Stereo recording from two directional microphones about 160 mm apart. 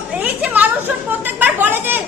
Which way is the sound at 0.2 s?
10° right (ahead or behind).